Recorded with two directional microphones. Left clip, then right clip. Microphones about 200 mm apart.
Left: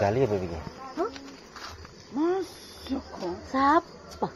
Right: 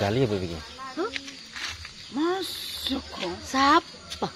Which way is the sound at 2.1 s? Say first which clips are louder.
Even; 30° right (ahead or behind).